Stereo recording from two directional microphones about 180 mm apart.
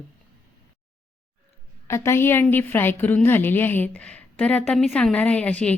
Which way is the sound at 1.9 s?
15° left (ahead or behind).